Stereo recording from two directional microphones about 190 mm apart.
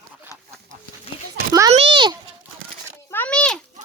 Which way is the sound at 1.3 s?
15° right (ahead or behind).